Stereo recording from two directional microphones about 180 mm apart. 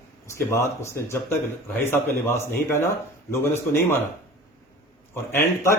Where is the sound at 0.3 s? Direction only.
15° left (ahead or behind).